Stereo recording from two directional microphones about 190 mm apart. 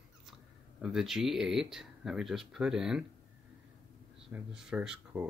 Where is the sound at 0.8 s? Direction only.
Centre (ahead or behind).